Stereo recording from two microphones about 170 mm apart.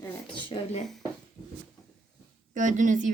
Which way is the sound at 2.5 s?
50° right (ahead or behind).